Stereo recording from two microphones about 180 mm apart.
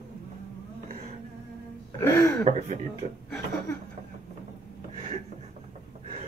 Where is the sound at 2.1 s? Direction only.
15° left (ahead or behind).